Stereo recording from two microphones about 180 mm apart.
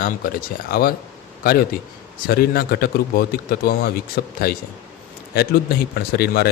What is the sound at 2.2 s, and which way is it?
Speech, 55° left (ahead or behind).